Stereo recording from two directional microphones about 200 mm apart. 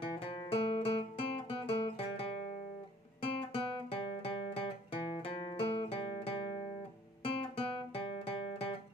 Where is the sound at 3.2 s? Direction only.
25° left (ahead or behind).